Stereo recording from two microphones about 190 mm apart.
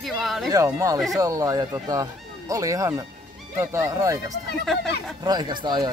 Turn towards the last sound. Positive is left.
turn(degrees=-25)  # may be behind; listen again after turning